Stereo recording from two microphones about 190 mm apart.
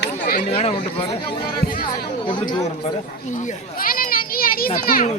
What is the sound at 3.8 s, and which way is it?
Children playing, 50° left (ahead or behind).